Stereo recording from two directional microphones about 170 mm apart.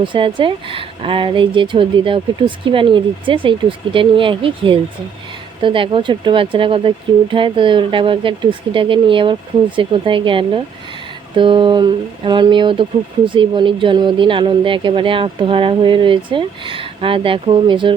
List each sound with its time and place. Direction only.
0.0 s speech: 30° right (ahead or behind)